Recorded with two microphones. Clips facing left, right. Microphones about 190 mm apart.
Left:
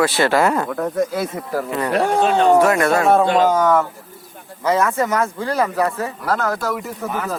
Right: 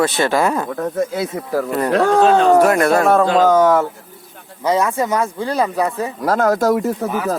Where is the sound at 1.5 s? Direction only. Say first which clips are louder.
Right 3 dB; 40° right (ahead or behind).